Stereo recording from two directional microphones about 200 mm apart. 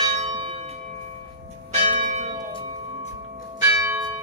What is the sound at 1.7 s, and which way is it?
Church bell, 35° right (ahead or behind).